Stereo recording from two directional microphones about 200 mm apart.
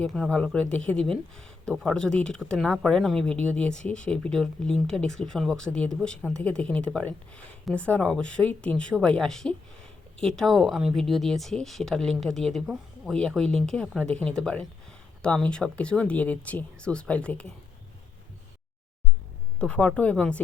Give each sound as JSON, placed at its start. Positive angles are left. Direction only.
{"t": 0.0, "sound": "speech", "side_deg": 5}
{"t": 19.5, "sound": "speech", "side_deg": 5}